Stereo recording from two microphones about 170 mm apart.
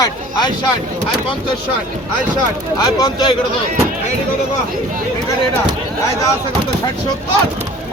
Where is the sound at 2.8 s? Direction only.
25° left (ahead or behind).